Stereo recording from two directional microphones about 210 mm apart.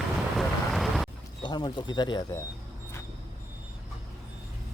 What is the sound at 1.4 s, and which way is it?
Speech, 20° left (ahead or behind).